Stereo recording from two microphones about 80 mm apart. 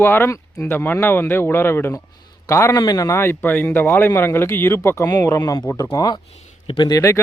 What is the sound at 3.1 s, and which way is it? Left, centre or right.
A man's voice, left.